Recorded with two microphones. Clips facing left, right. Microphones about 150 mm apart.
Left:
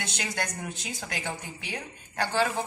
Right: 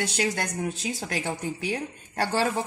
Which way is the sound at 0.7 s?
35° right (ahead or behind).